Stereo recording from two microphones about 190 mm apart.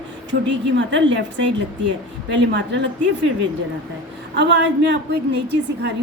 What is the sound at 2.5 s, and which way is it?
Speech, 70° right (ahead or behind).